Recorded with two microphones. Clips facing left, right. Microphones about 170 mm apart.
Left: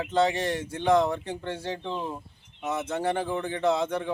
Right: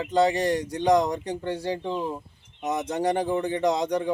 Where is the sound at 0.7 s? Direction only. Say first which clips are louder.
Even; 15° right (ahead or behind).